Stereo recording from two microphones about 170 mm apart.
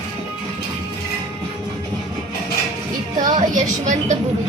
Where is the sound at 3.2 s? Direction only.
50° right (ahead or behind).